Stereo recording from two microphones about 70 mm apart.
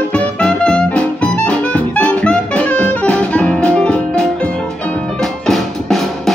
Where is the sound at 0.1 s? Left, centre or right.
Centre.